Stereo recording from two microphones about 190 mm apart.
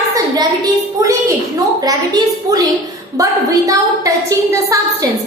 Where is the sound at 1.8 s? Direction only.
20° right (ahead or behind).